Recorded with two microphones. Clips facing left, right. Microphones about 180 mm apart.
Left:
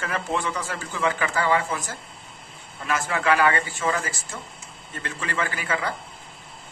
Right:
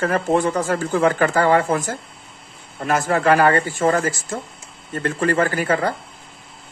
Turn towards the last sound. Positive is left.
turn(degrees=-45)  # may be behind; listen again after turning